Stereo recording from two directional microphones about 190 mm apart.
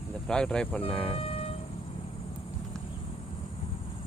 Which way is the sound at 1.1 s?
30° left (ahead or behind).